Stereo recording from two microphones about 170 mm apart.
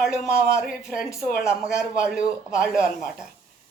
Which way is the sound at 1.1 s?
15° left (ahead or behind).